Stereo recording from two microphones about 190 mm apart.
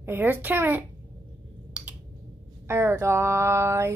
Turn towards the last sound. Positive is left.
turn(degrees=-15)  # may be behind; listen again after turning